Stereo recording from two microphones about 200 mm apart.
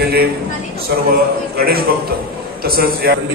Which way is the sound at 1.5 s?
50° right (ahead or behind).